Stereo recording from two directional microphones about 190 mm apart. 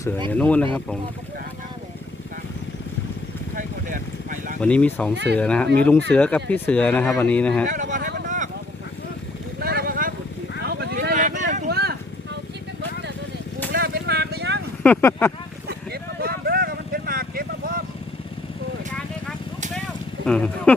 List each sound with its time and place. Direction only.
0.3 s speech: 10° left (ahead or behind)
3.5 s vehicle: 45° right (ahead or behind)
4.6 s speech: 5° left (ahead or behind)
5.1 s speech: 65° right (ahead or behind)
5.4 s speech: 5° left (ahead or behind)
7.7 s a sound: 45° right (ahead or behind)
8.1 s vehicle: 45° right (ahead or behind)
9.6 s vehicle: 55° right (ahead or behind)
11.7 s a sound: 55° right (ahead or behind)
13.7 s vehicle: 50° right (ahead or behind)
14.8 s vehicle: 10° left (ahead or behind)
15.6 s vehicle: 55° right (ahead or behind)
20.2 s a sound: 5° left (ahead or behind)